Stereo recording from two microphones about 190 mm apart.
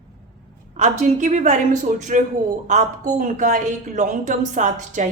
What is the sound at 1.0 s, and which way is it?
A woman's voice, 40° right (ahead or behind).